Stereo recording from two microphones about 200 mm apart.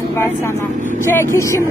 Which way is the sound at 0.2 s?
15° left (ahead or behind).